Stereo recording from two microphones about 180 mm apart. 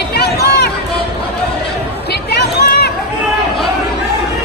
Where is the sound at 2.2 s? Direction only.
65° left (ahead or behind).